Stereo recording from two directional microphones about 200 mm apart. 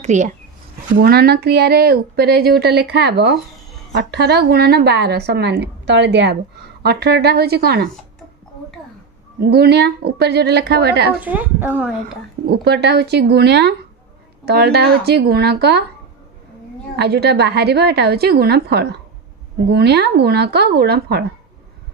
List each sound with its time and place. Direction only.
0.0 s speech: 35° right (ahead or behind)
0.9 s a woman's voice: 50° right (ahead or behind)
9.4 s a woman's voice: 55° right (ahead or behind)
11.1 s a woman's voice: 10° right (ahead or behind)
12.4 s a woman's voice: 55° right (ahead or behind)
16.9 s a woman's voice: 55° right (ahead or behind)